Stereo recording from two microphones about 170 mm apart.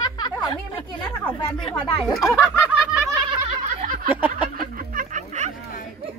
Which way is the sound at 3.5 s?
50° right (ahead or behind).